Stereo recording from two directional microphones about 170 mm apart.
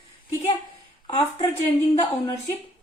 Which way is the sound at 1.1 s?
30° left (ahead or behind).